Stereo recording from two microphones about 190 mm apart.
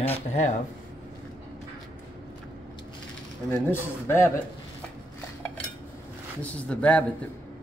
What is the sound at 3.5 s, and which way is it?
Speech, 10° left (ahead or behind).